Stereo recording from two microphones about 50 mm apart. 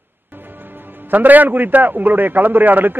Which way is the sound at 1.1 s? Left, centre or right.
Right.